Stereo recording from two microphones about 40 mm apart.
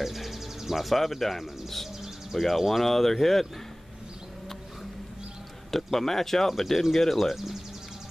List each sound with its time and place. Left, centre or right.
0.0 s speech: centre
5.7 s speech: centre